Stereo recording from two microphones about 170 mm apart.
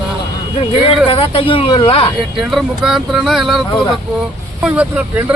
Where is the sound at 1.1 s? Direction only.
30° left (ahead or behind).